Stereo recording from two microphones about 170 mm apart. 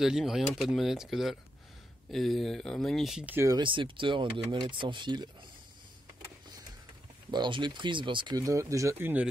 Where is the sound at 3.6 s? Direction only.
30° right (ahead or behind).